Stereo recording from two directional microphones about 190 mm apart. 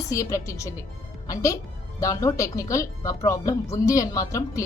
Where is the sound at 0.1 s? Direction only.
15° left (ahead or behind).